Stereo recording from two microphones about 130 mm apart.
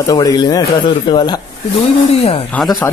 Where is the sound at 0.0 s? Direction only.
25° left (ahead or behind).